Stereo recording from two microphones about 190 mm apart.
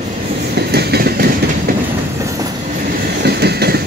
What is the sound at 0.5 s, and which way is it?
Train, 60° right (ahead or behind).